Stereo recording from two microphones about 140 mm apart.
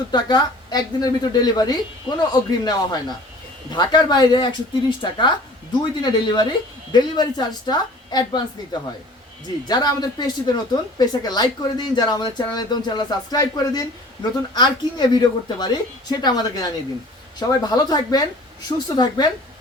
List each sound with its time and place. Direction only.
0.1 s speech: 30° left (ahead or behind)